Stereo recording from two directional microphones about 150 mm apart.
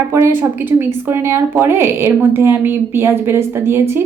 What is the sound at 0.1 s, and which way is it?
A woman's voice, 20° right (ahead or behind).